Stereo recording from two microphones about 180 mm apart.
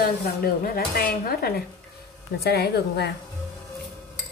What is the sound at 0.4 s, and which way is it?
Cutlery, 55° left (ahead or behind).